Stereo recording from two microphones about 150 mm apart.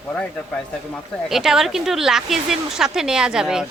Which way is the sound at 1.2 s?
Centre (ahead or behind).